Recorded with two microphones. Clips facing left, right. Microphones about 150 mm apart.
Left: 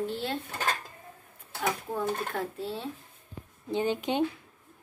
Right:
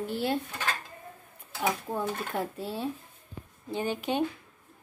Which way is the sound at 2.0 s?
5° right (ahead or behind).